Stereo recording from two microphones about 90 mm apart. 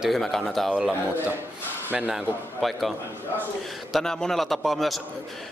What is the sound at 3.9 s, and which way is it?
A man's voice, 5° left (ahead or behind).